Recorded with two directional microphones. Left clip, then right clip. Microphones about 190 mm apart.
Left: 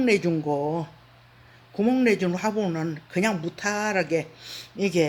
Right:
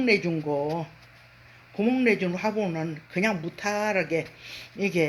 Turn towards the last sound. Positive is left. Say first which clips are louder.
# left 2 dB
turn(degrees=30)  # may be behind; listen again after turning